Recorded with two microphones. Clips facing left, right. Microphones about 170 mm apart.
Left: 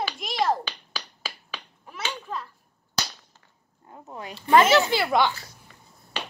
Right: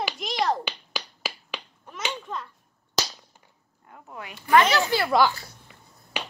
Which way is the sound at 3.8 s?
25° left (ahead or behind).